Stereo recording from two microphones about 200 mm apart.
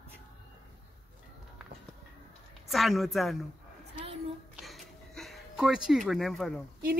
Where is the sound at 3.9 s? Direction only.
30° right (ahead or behind).